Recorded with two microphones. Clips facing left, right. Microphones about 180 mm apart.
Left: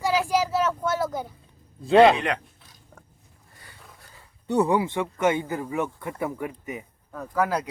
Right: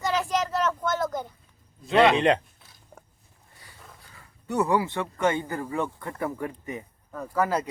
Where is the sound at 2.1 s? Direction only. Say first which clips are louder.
Right 5 dB; 25° right (ahead or behind).